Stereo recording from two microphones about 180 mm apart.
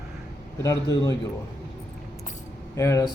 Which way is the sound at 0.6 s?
15° left (ahead or behind).